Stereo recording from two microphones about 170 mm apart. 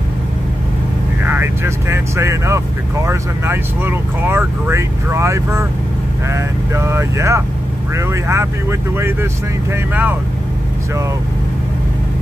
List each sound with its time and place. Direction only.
1.2 s speech: 10° right (ahead or behind)